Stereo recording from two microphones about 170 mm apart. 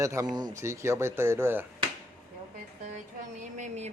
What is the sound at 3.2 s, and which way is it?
Speech, 45° right (ahead or behind).